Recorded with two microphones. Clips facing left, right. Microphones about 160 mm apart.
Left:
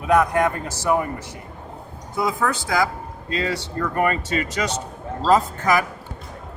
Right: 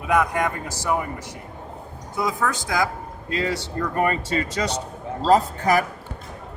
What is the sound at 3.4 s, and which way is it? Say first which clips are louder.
Speech: even; 20° right (ahead or behind).